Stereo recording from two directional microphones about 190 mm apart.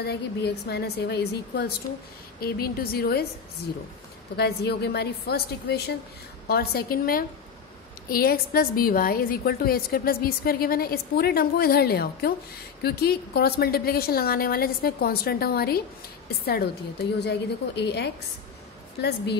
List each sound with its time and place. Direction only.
0.0 s a woman's voice: 60° left (ahead or behind)
4.4 s a woman's voice: 60° left (ahead or behind)